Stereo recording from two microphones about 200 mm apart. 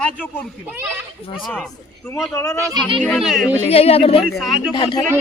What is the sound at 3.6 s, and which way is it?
Speech, 30° left (ahead or behind).